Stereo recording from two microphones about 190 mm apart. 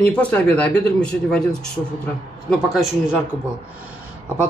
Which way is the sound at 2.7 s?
Centre (ahead or behind).